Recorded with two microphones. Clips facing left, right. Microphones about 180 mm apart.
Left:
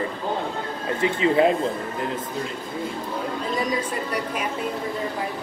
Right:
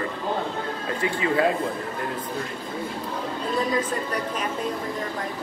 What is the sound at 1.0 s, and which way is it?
Speech, 20° left (ahead or behind).